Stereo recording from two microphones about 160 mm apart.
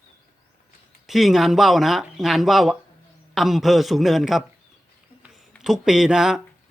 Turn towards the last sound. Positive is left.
turn(degrees=-5)  # may be behind; listen again after turning